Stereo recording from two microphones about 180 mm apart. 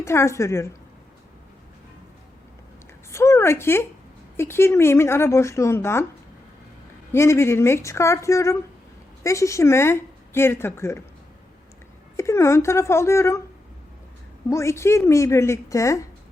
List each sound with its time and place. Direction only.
0.0 s speech: 15° left (ahead or behind)
3.1 s a sound: 15° left (ahead or behind)
4.4 s speech: 15° left (ahead or behind)
7.1 s speech: 15° left (ahead or behind)
12.1 s speech: 15° left (ahead or behind)
14.5 s speech: 15° left (ahead or behind)